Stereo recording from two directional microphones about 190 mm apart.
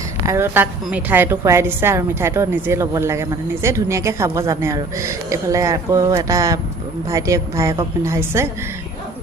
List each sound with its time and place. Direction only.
0.3 s a woman's voice: 15° right (ahead or behind)